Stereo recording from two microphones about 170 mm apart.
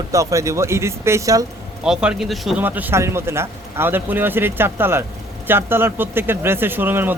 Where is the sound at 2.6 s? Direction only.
10° right (ahead or behind).